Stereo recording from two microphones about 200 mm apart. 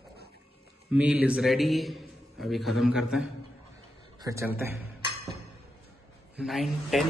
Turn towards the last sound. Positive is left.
turn(degrees=0)  # may be behind; listen again after turning